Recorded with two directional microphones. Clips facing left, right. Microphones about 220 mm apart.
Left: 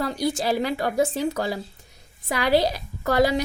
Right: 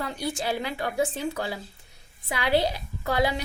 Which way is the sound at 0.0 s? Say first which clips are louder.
Left 6 dB; 40° left (ahead or behind).